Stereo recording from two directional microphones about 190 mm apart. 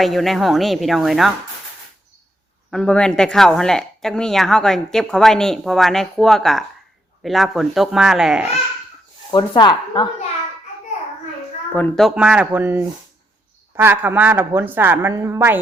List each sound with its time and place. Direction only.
0.0 s speech: centre (ahead or behind)
2.6 s speech: 5° left (ahead or behind)
9.3 s speech: 25° left (ahead or behind)
11.7 s a woman's voice: 10° left (ahead or behind); by 15.6 s 10° right (ahead or behind)